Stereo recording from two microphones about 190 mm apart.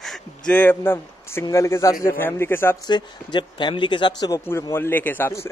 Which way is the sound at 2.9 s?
25° left (ahead or behind).